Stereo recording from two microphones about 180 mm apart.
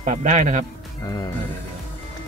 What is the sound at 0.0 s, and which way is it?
Speech, 45° right (ahead or behind).